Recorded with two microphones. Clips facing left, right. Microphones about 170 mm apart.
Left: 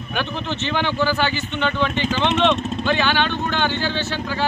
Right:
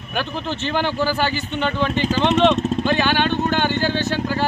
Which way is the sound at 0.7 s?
40° right (ahead or behind).